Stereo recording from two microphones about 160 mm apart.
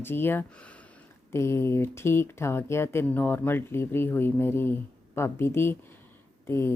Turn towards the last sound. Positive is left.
turn(degrees=15)  # may be behind; listen again after turning